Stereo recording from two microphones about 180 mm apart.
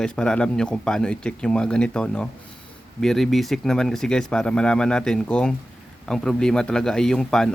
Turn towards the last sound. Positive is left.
turn(degrees=5)  # may be behind; listen again after turning